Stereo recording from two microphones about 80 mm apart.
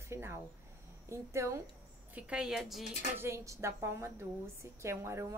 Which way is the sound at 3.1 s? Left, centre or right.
Right.